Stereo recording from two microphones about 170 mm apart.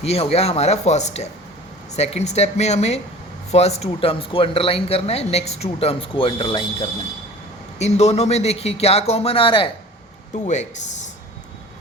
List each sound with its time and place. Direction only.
0.0 s speech: 35° left (ahead or behind)
10.3 s speech: 45° left (ahead or behind)